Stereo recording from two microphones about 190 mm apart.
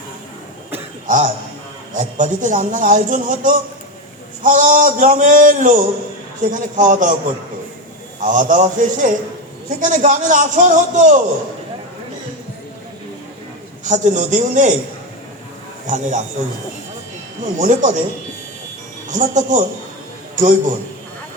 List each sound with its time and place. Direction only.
1.0 s a man's voice: 40° right (ahead or behind)
8.2 s a man's voice: 40° right (ahead or behind)
13.8 s a man's voice: 40° right (ahead or behind)
15.9 s a man's voice: 40° right (ahead or behind)
17.6 s a man's voice: 40° right (ahead or behind)
19.0 s a man's voice: 40° right (ahead or behind)